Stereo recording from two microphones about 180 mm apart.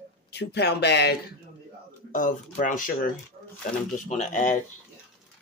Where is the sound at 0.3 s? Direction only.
65° left (ahead or behind).